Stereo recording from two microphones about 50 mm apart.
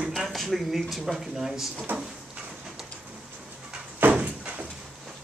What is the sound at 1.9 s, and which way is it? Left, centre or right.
Speech, right.